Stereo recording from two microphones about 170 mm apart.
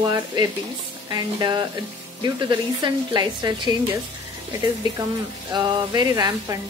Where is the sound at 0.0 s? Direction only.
20° right (ahead or behind).